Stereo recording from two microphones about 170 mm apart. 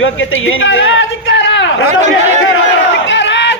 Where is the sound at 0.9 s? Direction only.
90° left.